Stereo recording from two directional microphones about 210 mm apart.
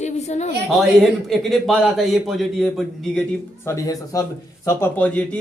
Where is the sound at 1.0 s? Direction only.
Centre (ahead or behind).